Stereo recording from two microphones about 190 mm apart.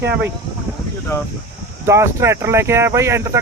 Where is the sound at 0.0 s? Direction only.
10° right (ahead or behind).